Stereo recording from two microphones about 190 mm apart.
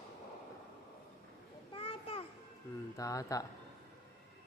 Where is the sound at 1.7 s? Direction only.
30° left (ahead or behind).